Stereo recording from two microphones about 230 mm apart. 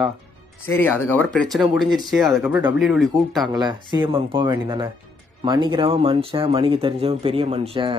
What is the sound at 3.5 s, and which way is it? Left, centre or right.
Speech, centre.